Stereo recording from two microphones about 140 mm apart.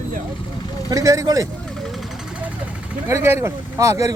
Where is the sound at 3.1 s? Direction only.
20° right (ahead or behind).